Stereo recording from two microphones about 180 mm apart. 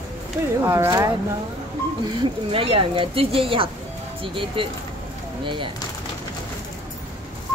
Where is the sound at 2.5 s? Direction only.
30° right (ahead or behind).